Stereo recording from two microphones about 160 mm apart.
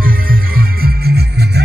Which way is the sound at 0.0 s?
65° right (ahead or behind).